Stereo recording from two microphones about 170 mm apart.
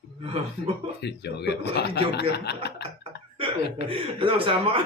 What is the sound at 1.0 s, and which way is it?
Speech, 80° left.